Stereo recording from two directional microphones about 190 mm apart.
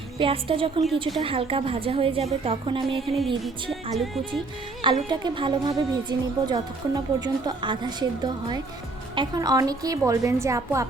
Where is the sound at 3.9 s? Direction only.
Centre (ahead or behind).